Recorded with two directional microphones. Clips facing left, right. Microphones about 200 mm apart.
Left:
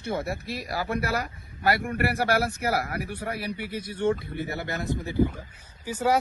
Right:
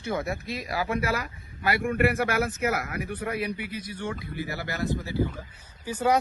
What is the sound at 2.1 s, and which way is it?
Speech, 35° left (ahead or behind).